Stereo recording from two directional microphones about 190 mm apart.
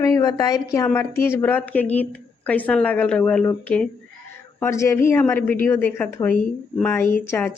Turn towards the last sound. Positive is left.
turn(degrees=10)  # may be behind; listen again after turning